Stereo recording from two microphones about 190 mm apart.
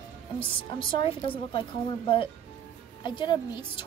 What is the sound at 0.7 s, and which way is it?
Speech, 25° left (ahead or behind).